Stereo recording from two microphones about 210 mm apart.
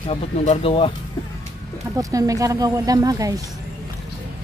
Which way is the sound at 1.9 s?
15° right (ahead or behind).